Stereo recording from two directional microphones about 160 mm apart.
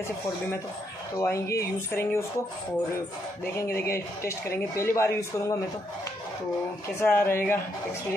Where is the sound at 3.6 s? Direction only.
15° left (ahead or behind).